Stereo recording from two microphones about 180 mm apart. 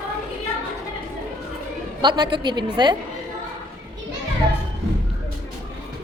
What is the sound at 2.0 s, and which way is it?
Speech, 25° right (ahead or behind).